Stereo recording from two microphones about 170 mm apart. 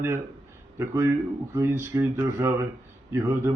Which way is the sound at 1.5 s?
15° right (ahead or behind).